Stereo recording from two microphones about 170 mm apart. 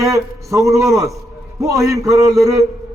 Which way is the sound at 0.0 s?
20° right (ahead or behind).